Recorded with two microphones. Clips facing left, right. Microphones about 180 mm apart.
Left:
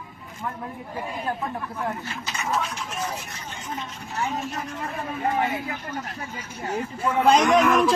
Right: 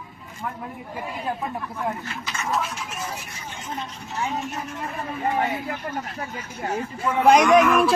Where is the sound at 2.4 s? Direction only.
Centre (ahead or behind).